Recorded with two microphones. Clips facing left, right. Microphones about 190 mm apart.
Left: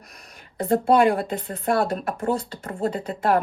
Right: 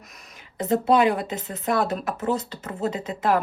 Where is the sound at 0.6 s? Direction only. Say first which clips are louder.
Left 1 dB; 50° left (ahead or behind).